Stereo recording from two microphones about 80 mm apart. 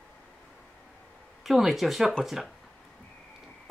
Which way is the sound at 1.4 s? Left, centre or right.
Centre.